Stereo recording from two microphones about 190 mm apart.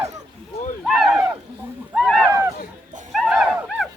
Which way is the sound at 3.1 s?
Centre (ahead or behind).